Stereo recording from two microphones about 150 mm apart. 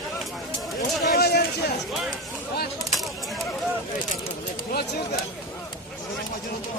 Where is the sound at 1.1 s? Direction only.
90° left.